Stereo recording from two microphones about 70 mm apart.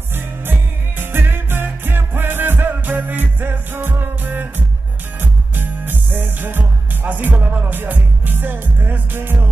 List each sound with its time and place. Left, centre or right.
0.9 s music: right